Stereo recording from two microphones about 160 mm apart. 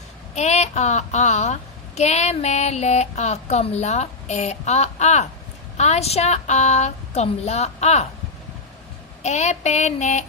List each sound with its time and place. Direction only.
0.3 s a woman's voice: 45° left (ahead or behind)
9.2 s a woman's voice: 45° left (ahead or behind)